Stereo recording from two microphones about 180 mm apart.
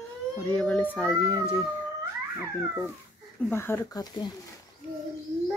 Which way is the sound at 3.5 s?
15° left (ahead or behind).